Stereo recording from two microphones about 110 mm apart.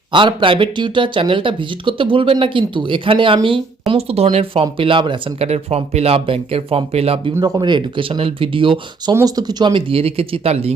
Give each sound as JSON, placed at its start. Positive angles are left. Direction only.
{"t": 0.1, "sound": "speech", "side_deg": -45}
{"t": 4.6, "sound": "speech", "side_deg": -50}
{"t": 5.5, "sound": "speech", "side_deg": -70}
{"t": 7.4, "sound": "speech", "side_deg": -40}
{"t": 9.1, "sound": "speech", "side_deg": -35}
{"t": 9.9, "sound": "speech", "side_deg": -60}